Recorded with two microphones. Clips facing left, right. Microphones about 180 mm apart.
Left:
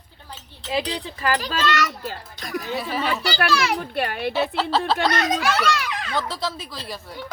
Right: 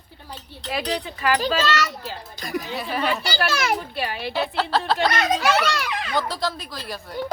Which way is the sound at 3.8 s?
55° left (ahead or behind).